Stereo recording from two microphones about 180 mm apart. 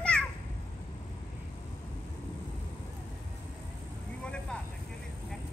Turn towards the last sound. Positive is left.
turn(degrees=5)  # may be behind; listen again after turning